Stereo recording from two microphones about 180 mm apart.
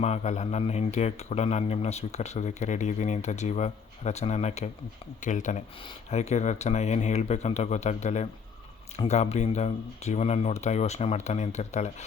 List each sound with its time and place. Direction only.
0.0 s speech: 40° left (ahead or behind)